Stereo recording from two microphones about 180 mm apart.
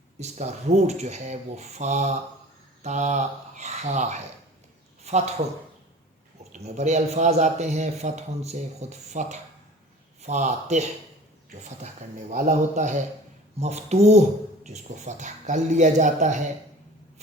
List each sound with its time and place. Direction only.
0.2 s a man's voice: 40° right (ahead or behind)
6.5 s a man's voice: 40° right (ahead or behind)
12.3 s a man's voice: 45° right (ahead or behind)